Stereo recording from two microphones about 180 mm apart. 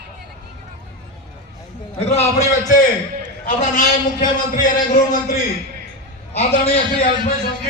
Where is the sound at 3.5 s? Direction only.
45° left (ahead or behind).